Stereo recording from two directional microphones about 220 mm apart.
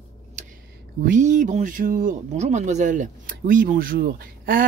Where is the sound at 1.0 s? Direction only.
35° right (ahead or behind).